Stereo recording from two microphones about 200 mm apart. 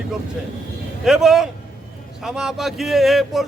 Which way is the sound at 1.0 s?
Centre (ahead or behind).